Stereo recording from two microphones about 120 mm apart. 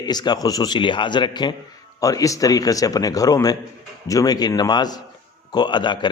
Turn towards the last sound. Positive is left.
turn(degrees=40)  # may be behind; listen again after turning